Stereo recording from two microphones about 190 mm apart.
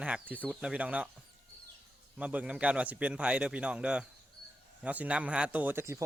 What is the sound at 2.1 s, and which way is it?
A man's voice, 5° right (ahead or behind).